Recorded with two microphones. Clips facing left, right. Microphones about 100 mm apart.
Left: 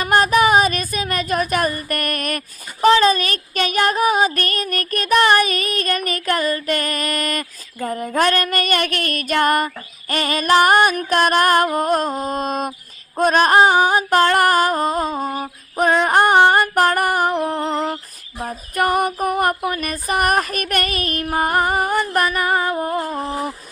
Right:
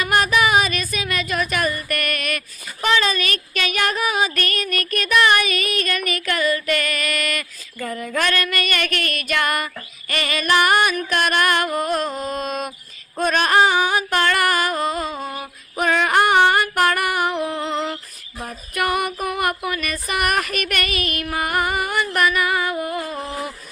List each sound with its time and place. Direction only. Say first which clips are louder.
0.0 s female singing: left 3 dB; 40° left (ahead or behind)
2.8 s music: left 6 dB; 35° left (ahead or behind)